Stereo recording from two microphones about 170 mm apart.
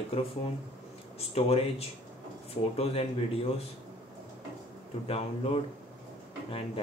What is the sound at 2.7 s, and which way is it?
Speech, 35° left (ahead or behind).